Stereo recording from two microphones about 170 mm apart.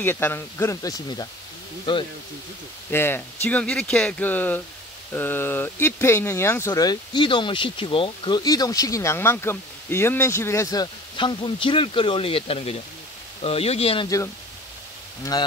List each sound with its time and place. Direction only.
0.0 s speech: 10° left (ahead or behind)
2.9 s speech: 15° left (ahead or behind); by 14.0 s 35° left (ahead or behind)
14.0 s speech: 20° left (ahead or behind)